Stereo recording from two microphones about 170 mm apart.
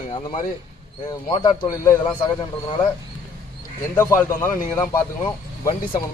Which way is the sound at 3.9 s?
15° left (ahead or behind).